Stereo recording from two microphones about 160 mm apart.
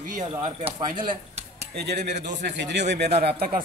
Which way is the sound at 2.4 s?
90° right.